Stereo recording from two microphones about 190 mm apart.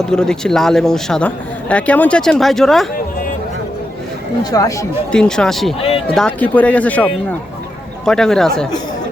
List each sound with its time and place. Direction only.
0.0 s speech: 5° left (ahead or behind)
4.5 s speech: 20° left (ahead or behind)
5.1 s speech: 5° left (ahead or behind)